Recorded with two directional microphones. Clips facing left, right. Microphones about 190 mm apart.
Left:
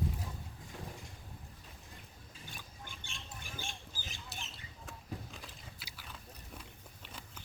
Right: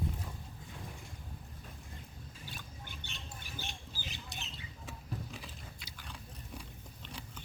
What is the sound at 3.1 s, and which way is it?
Squawk, 50° left (ahead or behind).